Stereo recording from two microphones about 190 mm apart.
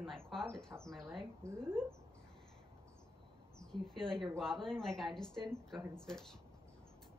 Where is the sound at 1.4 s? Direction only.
15° right (ahead or behind).